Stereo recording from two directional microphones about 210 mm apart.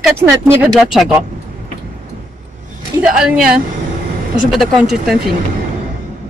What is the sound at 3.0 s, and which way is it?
Speech, 5° right (ahead or behind).